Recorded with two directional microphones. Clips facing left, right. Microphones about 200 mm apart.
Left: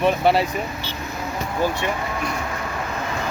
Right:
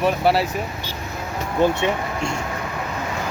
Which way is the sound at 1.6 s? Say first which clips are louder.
Right 5 dB; 25° right (ahead or behind).